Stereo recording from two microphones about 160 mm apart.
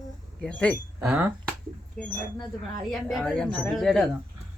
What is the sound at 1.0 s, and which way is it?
A woman's voice, 5° right (ahead or behind).